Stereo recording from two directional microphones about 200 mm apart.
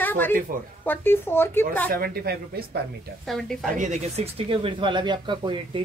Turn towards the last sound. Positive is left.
turn(degrees=-25)  # may be behind; listen again after turning